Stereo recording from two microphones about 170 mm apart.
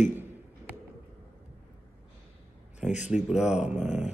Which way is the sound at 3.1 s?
5° right (ahead or behind).